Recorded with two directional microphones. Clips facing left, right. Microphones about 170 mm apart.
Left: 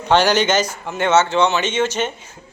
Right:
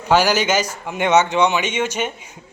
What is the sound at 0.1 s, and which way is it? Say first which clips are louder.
A man's voice: left 1 dB; 10° right (ahead or behind).